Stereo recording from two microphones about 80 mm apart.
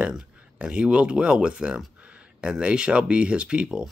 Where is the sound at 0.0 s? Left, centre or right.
Centre.